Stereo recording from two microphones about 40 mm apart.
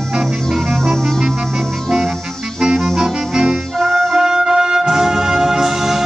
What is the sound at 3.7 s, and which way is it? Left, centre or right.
Music, centre.